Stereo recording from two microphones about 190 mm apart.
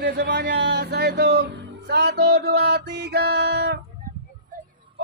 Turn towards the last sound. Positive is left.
turn(degrees=-60)  # may be behind; listen again after turning